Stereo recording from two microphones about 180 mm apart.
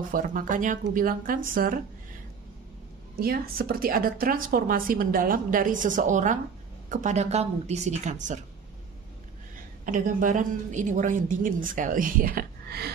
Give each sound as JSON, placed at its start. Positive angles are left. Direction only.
{"t": 0.1, "sound": "speech", "side_deg": -50}
{"t": 3.2, "sound": "speech", "side_deg": -55}
{"t": 9.8, "sound": "speech", "side_deg": -45}